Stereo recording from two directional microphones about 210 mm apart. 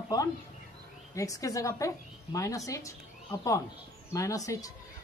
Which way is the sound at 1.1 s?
15° left (ahead or behind).